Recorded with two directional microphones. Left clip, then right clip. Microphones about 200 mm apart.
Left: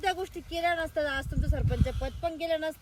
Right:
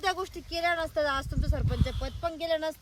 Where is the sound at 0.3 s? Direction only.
45° right (ahead or behind).